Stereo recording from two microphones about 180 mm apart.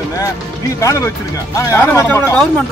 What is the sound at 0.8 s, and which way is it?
Speech, 15° left (ahead or behind).